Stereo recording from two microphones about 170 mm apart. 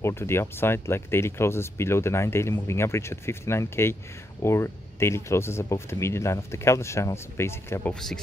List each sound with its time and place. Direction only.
0.0 s speech: 15° left (ahead or behind)
7.9 s speech: 5° left (ahead or behind)